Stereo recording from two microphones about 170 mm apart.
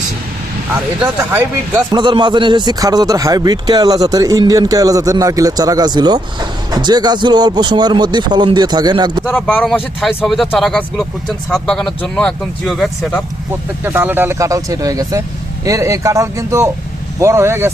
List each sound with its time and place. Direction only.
1.0 s speech: 10° right (ahead or behind)
1.9 s a man's voice: 25° right (ahead or behind)
9.3 s speech: 10° left (ahead or behind)
13.8 s a man's voice: 10° right (ahead or behind)